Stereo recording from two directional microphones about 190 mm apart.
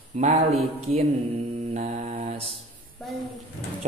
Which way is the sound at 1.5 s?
35° right (ahead or behind).